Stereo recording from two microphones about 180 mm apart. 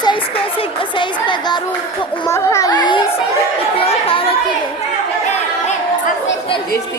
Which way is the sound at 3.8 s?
30° left (ahead or behind).